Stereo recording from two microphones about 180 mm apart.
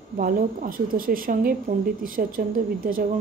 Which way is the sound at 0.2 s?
50° right (ahead or behind).